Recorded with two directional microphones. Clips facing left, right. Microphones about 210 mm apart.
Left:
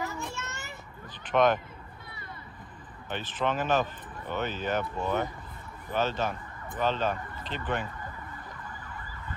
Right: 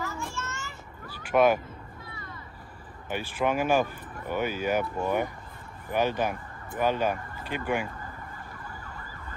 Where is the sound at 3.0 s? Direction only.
10° right (ahead or behind).